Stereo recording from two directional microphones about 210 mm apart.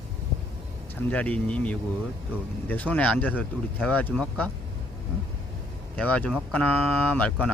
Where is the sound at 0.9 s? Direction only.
5° left (ahead or behind).